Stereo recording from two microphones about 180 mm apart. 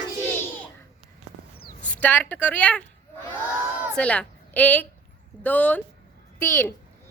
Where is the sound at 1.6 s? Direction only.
55° left (ahead or behind).